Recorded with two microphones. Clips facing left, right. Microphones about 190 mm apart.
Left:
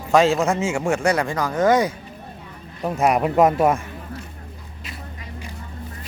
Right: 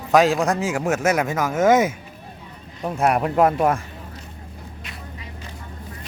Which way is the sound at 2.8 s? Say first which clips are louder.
Left 1 dB; 5° left (ahead or behind).